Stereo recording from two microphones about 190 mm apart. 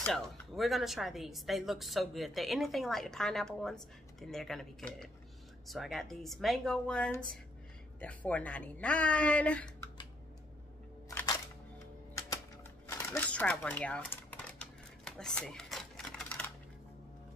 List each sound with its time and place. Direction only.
0.0 s speech: centre (ahead or behind)
11.1 s single-lens reflex camera: 20° left (ahead or behind)
12.9 s typewriter: 10° left (ahead or behind)